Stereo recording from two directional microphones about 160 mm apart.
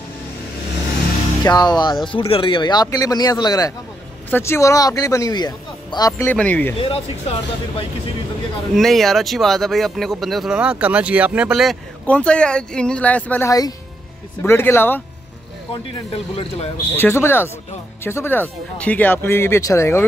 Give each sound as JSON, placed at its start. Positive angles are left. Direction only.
{"t": 1.4, "sound": "speech", "side_deg": 25}
{"t": 6.3, "sound": "speech", "side_deg": 10}
{"t": 6.8, "sound": "speech", "side_deg": 40}
{"t": 8.7, "sound": "speech", "side_deg": 0}
{"t": 12.1, "sound": "speech", "side_deg": 5}
{"t": 13.5, "sound": "speech", "side_deg": 25}
{"t": 15.7, "sound": "speech", "side_deg": 35}
{"t": 16.9, "sound": "speech", "side_deg": 15}